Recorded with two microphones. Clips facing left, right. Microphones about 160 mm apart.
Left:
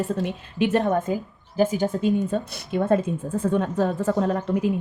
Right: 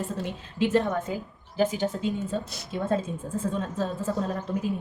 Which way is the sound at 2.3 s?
60° left (ahead or behind).